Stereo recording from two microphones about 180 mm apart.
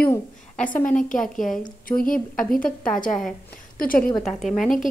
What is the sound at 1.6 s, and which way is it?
Speech, 50° left (ahead or behind).